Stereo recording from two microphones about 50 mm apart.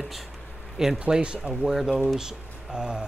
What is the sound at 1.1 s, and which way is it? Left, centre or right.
Speech, right.